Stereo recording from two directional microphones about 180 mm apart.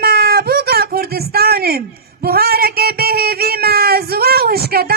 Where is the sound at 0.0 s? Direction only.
60° right (ahead or behind).